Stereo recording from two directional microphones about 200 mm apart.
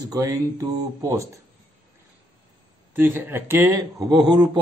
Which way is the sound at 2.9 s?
10° right (ahead or behind).